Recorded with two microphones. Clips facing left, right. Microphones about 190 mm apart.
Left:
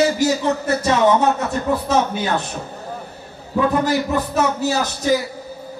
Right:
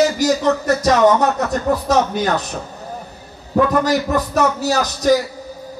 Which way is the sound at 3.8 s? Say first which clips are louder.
Right 2 dB; 40° right (ahead or behind).